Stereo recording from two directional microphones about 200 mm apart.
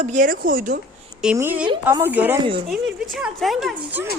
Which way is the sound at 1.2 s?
10° right (ahead or behind).